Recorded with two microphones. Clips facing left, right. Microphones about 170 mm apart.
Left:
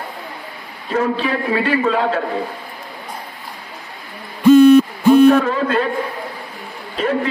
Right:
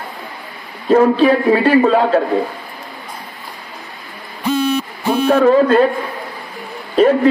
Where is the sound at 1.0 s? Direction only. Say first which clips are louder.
Right 8 dB; 40° right (ahead or behind).